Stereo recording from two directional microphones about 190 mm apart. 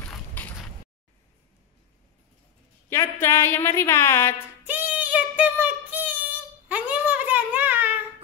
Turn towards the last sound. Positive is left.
turn(degrees=-10)  # may be behind; listen again after turning